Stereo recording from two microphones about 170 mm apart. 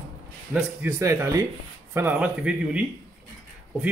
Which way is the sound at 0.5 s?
10° right (ahead or behind).